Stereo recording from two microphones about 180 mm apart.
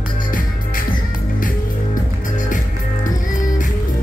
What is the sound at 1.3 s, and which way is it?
Music, 50° left (ahead or behind).